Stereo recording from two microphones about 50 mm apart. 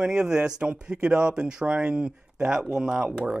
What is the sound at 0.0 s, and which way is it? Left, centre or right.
Speech, centre.